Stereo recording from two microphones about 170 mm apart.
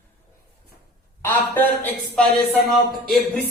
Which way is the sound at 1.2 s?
10° left (ahead or behind).